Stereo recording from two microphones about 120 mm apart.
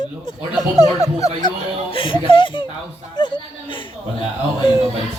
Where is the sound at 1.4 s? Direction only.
40° left (ahead or behind).